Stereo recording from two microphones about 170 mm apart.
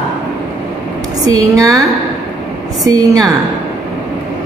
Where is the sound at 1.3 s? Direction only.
20° right (ahead or behind).